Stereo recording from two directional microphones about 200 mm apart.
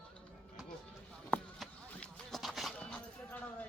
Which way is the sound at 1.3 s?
5° left (ahead or behind).